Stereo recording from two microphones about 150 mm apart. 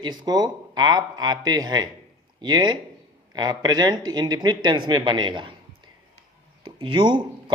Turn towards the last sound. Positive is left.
turn(degrees=-35)  # may be behind; listen again after turning